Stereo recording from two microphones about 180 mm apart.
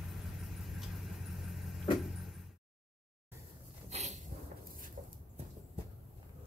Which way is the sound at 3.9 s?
40° right (ahead or behind).